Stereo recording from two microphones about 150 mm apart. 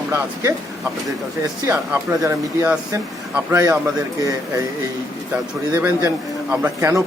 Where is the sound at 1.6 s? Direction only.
20° right (ahead or behind).